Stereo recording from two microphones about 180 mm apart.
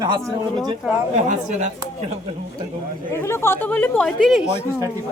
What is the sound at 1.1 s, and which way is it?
Speech, 40° right (ahead or behind).